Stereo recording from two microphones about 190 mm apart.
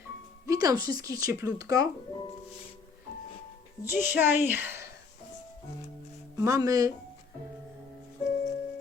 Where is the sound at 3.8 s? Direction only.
10° right (ahead or behind).